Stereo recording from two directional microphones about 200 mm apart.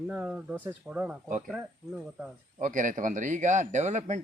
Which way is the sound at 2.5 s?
40° right (ahead or behind).